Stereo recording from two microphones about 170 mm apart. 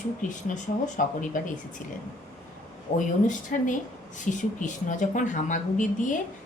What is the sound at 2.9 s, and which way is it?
A woman's voice, 40° left (ahead or behind).